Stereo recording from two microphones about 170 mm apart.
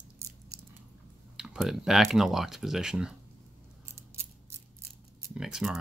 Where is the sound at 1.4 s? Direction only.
Centre (ahead or behind).